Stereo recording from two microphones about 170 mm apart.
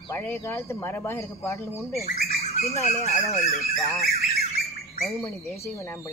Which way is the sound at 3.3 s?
Centre (ahead or behind).